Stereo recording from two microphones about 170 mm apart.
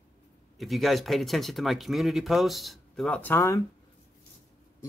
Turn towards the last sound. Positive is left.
turn(degrees=15)  # may be behind; listen again after turning